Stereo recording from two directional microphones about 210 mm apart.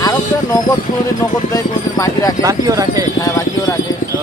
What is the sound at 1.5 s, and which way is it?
Speech, 15° left (ahead or behind).